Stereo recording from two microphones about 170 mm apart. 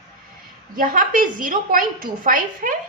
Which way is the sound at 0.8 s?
50° right (ahead or behind).